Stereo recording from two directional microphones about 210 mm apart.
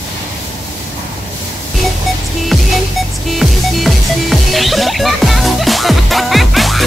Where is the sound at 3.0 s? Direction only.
Centre (ahead or behind).